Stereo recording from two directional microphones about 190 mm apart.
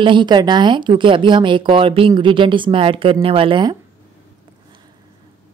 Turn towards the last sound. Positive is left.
turn(degrees=-25)  # may be behind; listen again after turning